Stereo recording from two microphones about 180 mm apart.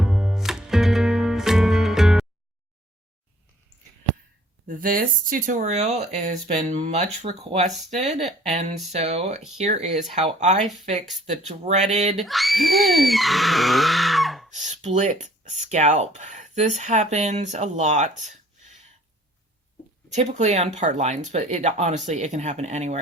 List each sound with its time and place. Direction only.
0.0 s music: 5° right (ahead or behind)
4.7 s speech: 50° right (ahead or behind)
12.2 s screaming: centre (ahead or behind)
14.5 s speech: 40° right (ahead or behind)
20.1 s speech: 40° right (ahead or behind)